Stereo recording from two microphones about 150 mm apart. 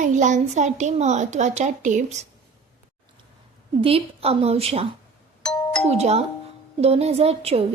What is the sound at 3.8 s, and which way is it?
A woman's voice, 40° right (ahead or behind).